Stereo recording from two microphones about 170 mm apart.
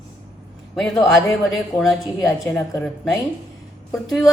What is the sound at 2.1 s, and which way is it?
Speech, 20° left (ahead or behind).